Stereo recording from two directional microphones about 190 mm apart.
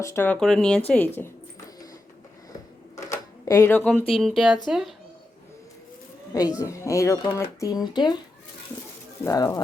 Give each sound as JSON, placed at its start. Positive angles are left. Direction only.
{"t": 0.0, "sound": "speech", "side_deg": 15}
{"t": 2.9, "sound": "cash register", "side_deg": 15}
{"t": 4.1, "sound": "speech", "side_deg": 0}
{"t": 6.6, "sound": "speech", "side_deg": 15}
{"t": 9.2, "sound": "speech", "side_deg": 15}